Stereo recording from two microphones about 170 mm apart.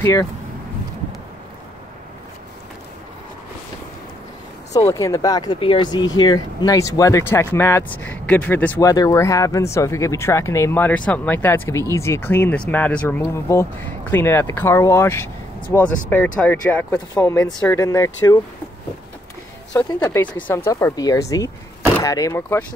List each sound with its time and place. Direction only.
0.0 s speech: 20° left (ahead or behind)
4.7 s speech: 20° left (ahead or behind)
19.9 s speech: 15° left (ahead or behind)